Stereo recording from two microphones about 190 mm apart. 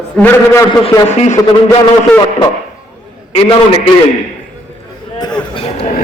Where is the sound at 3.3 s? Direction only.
30° left (ahead or behind).